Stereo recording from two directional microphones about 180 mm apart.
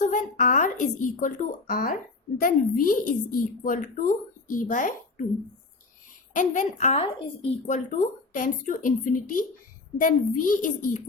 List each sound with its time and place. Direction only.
0.0 s speech: 45° left (ahead or behind)
6.3 s speech: 45° left (ahead or behind)